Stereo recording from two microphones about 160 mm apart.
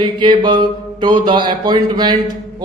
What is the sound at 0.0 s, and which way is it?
Speech, 30° right (ahead or behind).